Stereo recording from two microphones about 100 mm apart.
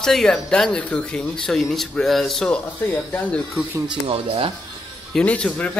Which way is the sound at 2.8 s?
20° left (ahead or behind).